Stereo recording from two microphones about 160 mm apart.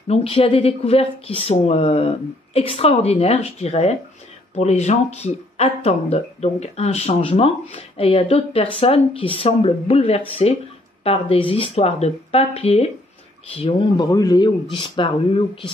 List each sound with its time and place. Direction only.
0.1 s speech: 40° left (ahead or behind)